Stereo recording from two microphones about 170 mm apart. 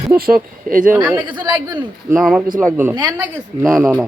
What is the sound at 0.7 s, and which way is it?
Speech, 50° right (ahead or behind).